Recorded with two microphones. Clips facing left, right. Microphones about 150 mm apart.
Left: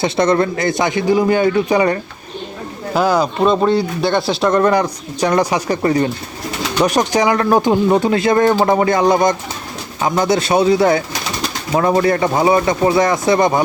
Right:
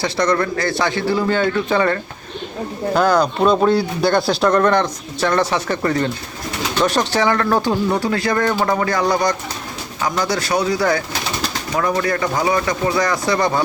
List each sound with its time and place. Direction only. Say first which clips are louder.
0.0 s a man's voice: left 4 dB; 25° left (ahead or behind)